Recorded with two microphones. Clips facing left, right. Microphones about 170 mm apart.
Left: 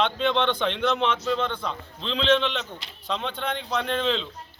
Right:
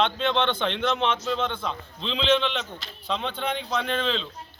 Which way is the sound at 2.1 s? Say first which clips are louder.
Left 1 dB; 10° right (ahead or behind).